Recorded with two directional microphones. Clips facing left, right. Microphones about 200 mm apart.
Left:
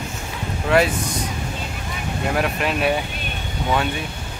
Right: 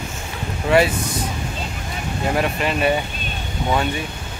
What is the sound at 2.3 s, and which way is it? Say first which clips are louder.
Speech: right 1 dB; centre (ahead or behind).